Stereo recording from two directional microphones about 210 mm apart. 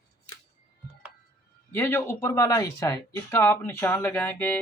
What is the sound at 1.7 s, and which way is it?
Speech, 10° left (ahead or behind).